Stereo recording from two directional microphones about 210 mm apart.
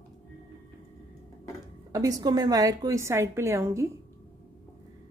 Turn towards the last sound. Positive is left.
turn(degrees=-15)  # may be behind; listen again after turning